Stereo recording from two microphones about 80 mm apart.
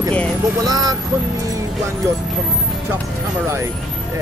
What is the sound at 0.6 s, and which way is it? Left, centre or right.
Speech, right.